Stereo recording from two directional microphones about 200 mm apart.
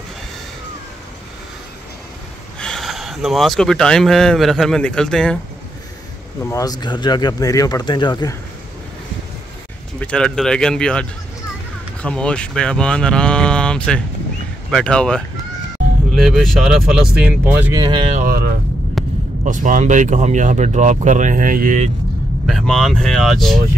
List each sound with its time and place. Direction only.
2.6 s speech: centre (ahead or behind)
6.4 s speech: 15° left (ahead or behind)
9.9 s speech: 5° left (ahead or behind)
17.7 s speech: 25° right (ahead or behind)
18.2 s vehicle: 45° right (ahead or behind)
19.0 s vehicle: centre (ahead or behind)
19.4 s speech: 40° right (ahead or behind)
22.5 s speech: centre (ahead or behind)